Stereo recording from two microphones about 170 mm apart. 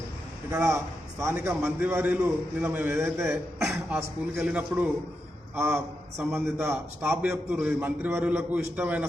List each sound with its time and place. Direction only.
0.5 s a man's voice: 15° right (ahead or behind)